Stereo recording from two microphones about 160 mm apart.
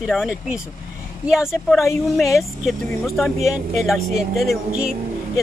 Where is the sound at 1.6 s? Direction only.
Centre (ahead or behind).